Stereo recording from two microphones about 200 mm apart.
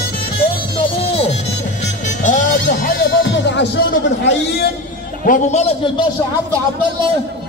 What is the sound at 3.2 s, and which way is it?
Music, 65° left (ahead or behind).